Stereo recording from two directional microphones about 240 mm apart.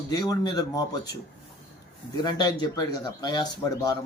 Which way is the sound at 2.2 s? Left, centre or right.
Centre.